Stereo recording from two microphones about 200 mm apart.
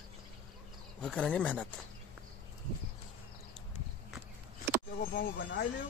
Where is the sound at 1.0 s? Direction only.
5° left (ahead or behind).